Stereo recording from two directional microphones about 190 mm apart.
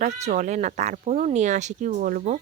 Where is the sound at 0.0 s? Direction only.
40° right (ahead or behind).